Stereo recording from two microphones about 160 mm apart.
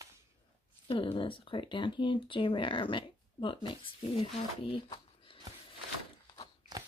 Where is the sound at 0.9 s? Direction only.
30° left (ahead or behind).